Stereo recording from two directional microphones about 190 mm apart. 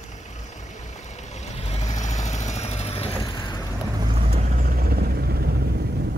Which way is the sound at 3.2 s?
25° left (ahead or behind).